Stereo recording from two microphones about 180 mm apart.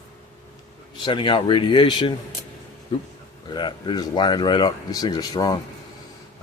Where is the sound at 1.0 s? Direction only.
25° left (ahead or behind).